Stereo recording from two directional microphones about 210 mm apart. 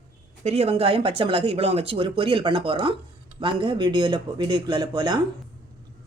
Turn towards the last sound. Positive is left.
turn(degrees=-20)  # may be behind; listen again after turning